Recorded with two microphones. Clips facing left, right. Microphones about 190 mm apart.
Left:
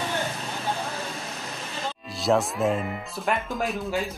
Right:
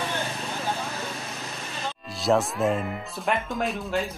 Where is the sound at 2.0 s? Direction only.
Centre (ahead or behind).